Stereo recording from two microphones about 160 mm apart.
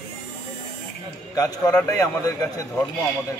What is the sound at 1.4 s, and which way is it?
A man's voice, 25° left (ahead or behind).